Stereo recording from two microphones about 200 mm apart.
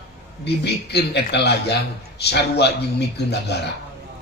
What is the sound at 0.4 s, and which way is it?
A man's voice, 55° left (ahead or behind).